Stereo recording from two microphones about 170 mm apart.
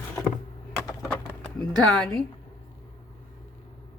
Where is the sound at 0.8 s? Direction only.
Centre (ahead or behind).